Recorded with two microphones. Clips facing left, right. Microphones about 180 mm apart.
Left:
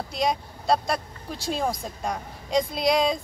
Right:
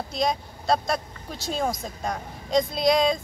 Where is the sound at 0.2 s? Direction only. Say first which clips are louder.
Even; 10° left (ahead or behind).